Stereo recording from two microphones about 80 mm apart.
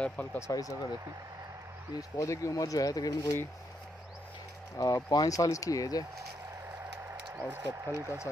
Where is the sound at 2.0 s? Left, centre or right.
Left.